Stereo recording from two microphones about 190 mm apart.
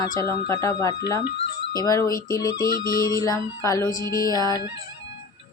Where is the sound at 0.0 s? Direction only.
20° left (ahead or behind).